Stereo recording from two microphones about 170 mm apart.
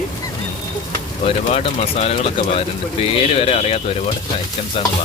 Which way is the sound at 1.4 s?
40° left (ahead or behind).